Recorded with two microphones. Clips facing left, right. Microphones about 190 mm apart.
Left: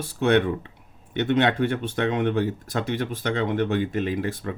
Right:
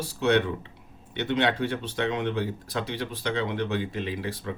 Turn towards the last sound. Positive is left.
turn(degrees=50)  # may be behind; listen again after turning